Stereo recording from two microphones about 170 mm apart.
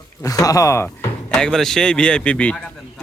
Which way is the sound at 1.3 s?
5° left (ahead or behind).